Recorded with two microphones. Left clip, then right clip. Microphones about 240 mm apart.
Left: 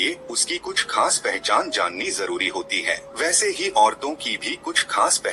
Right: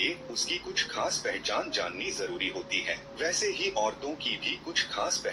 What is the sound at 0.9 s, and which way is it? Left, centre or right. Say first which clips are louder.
Speech: left 10 dB; left.